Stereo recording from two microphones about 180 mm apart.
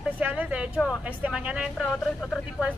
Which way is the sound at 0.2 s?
5° right (ahead or behind).